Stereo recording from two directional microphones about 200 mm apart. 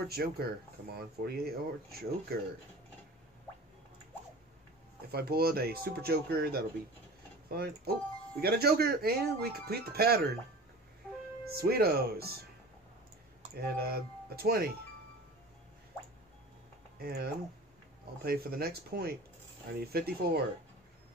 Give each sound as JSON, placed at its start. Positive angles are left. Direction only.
{"t": 0.1, "sound": "speech", "side_deg": -50}
{"t": 5.1, "sound": "speech", "side_deg": -50}
{"t": 11.4, "sound": "speech", "side_deg": -50}
{"t": 13.6, "sound": "speech", "side_deg": -50}
{"t": 17.0, "sound": "speech", "side_deg": -50}